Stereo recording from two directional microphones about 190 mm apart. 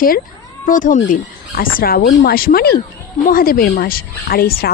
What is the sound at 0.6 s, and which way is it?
Speech, 45° left (ahead or behind).